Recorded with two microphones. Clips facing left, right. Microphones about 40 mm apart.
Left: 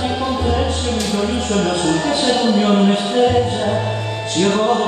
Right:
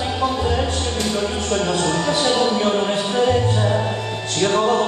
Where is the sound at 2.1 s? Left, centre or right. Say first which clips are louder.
Left 2 dB; centre.